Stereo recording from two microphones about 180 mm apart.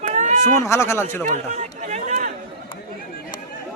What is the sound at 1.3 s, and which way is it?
Speech, 40° right (ahead or behind).